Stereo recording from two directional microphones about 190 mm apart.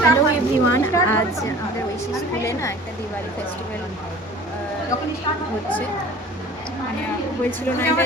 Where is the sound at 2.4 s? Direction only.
15° left (ahead or behind).